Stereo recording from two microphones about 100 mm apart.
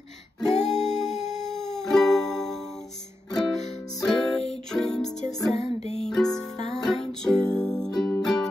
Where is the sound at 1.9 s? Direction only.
5° left (ahead or behind).